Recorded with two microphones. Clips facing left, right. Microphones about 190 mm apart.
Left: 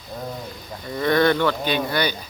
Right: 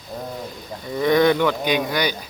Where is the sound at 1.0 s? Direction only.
15° right (ahead or behind).